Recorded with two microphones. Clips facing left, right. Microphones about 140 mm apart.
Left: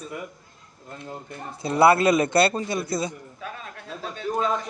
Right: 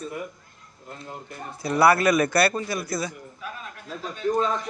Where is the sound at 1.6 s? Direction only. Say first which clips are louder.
Left 1 dB; 25° left (ahead or behind).